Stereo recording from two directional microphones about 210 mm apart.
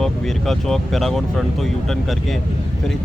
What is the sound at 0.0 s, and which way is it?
Speech, centre (ahead or behind).